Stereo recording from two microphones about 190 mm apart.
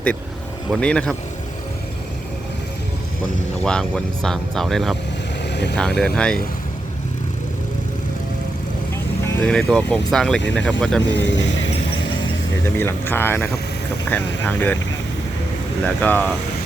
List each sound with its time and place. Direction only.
0.7 s speech: 5° left (ahead or behind)
3.6 s speech: 5° left (ahead or behind)
9.2 s speech: 10° left (ahead or behind)
11.0 s speech: 70° left (ahead or behind)
12.7 s speech: 10° left (ahead or behind)
16.0 s speech: 10° left (ahead or behind)